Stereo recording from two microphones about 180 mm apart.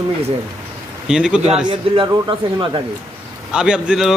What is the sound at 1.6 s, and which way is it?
A man's voice, 25° right (ahead or behind).